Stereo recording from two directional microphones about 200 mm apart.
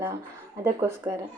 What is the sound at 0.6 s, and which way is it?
Speech, 15° right (ahead or behind).